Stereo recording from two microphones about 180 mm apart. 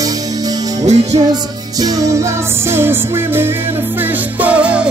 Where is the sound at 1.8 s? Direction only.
20° right (ahead or behind).